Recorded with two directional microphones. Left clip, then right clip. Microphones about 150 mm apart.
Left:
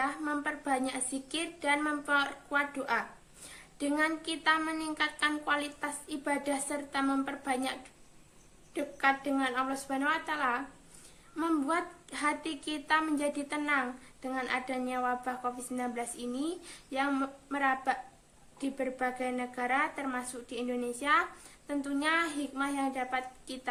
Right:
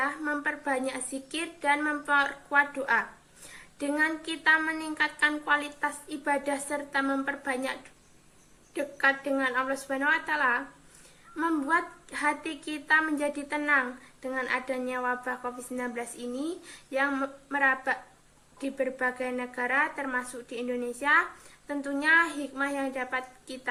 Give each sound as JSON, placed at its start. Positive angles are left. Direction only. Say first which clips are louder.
{"t": 0.0, "sound": "a woman's voice", "louder": "right 3 dB", "side_deg": 30}
{"t": 8.7, "sound": "a woman's voice", "louder": "right 3 dB", "side_deg": 25}